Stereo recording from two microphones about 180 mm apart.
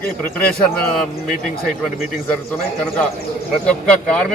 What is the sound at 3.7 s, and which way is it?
Speech, 5° left (ahead or behind).